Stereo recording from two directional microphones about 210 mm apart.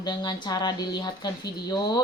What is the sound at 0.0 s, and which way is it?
Speech, 20° left (ahead or behind).